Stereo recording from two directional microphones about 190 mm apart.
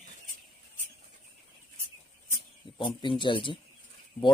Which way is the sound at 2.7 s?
25° left (ahead or behind).